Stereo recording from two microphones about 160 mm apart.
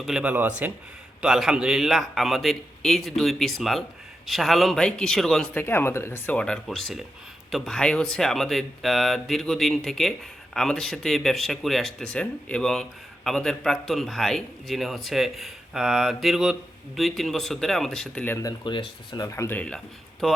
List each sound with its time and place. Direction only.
0.0 s speech: 5° right (ahead or behind)
5.6 s speech: 15° left (ahead or behind)
18.4 s speech: 30° left (ahead or behind); by 20.3 s 5° left (ahead or behind)